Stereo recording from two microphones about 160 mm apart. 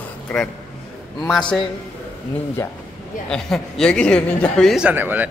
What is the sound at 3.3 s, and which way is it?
A man's voice, 5° left (ahead or behind).